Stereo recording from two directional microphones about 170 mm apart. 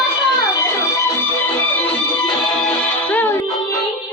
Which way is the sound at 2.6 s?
10° left (ahead or behind).